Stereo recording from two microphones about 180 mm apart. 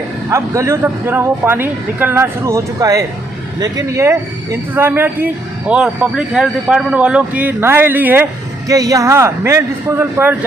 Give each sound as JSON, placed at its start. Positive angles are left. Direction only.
{"t": 0.3, "sound": "a man's voice", "side_deg": -15}